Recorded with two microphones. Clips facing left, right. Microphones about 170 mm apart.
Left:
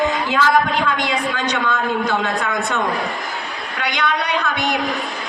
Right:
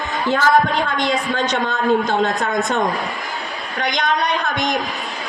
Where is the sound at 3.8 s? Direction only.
45° right (ahead or behind).